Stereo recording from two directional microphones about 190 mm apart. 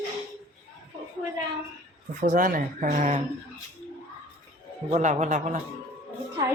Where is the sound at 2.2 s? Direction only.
40° right (ahead or behind).